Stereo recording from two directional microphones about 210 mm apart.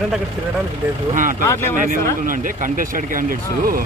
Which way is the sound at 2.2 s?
40° right (ahead or behind).